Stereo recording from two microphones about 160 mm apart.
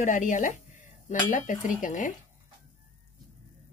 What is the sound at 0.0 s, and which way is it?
Cutlery, 55° left (ahead or behind).